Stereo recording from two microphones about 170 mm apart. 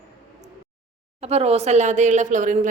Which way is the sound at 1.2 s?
35° right (ahead or behind).